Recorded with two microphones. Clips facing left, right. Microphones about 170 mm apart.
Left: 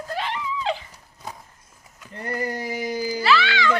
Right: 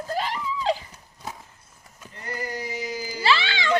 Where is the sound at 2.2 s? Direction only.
55° left (ahead or behind).